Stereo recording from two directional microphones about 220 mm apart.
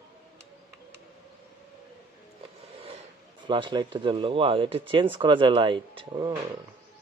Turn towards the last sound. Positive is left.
turn(degrees=-20)  # may be behind; listen again after turning